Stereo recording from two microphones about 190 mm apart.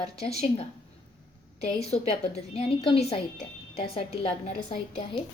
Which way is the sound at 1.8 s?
35° left (ahead or behind).